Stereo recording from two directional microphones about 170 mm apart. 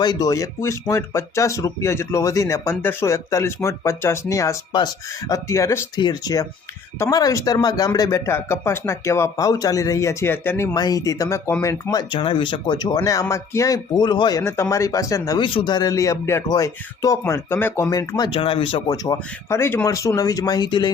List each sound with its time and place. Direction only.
0.0 s speech: 25° left (ahead or behind)
10.8 s speech: 20° left (ahead or behind)
18.3 s speech: 30° left (ahead or behind)